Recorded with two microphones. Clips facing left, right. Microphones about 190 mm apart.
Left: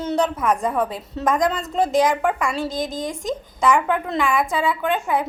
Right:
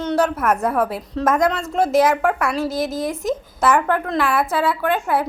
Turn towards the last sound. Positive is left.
turn(degrees=-5)  # may be behind; listen again after turning